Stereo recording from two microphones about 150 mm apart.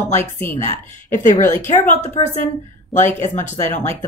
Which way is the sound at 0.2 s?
15° left (ahead or behind).